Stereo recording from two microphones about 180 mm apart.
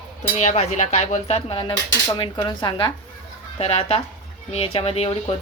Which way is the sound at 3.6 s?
35° left (ahead or behind).